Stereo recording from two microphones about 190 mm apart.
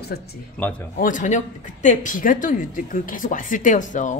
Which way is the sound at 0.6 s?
5° left (ahead or behind).